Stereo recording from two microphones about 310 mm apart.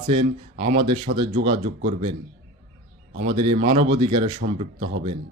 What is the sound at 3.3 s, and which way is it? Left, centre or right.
Speech, centre.